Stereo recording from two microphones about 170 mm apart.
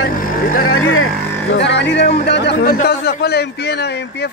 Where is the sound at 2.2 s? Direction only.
90° left.